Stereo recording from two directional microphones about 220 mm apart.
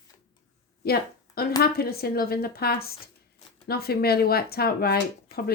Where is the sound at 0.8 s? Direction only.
45° left (ahead or behind).